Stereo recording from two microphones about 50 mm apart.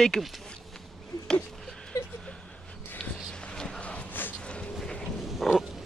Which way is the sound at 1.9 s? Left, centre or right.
Left.